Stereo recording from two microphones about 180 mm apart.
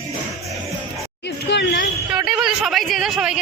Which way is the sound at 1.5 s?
70° left (ahead or behind).